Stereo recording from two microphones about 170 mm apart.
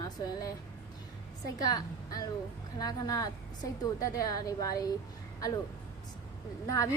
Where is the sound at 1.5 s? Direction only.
20° left (ahead or behind).